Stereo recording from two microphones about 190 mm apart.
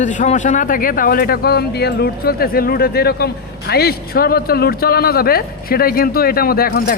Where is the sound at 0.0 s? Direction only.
40° left (ahead or behind).